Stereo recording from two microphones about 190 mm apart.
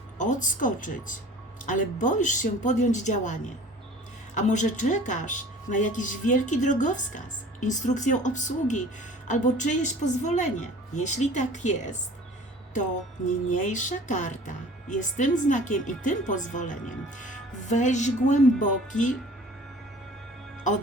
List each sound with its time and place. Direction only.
0.2 s speech: 40° left (ahead or behind)
4.4 s speech: 40° left (ahead or behind)
13.5 s speech: 40° left (ahead or behind)